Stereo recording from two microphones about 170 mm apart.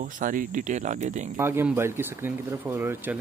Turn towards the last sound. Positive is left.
turn(degrees=-10)  # may be behind; listen again after turning